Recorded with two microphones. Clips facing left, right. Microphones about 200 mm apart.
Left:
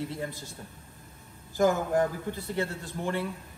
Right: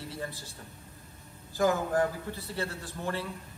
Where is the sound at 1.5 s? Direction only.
15° left (ahead or behind).